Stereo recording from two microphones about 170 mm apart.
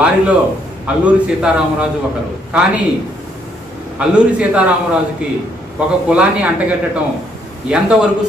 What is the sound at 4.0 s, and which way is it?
Speech, 5° right (ahead or behind).